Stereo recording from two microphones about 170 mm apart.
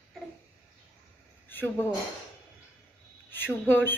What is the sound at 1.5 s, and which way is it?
Speech, 10° left (ahead or behind).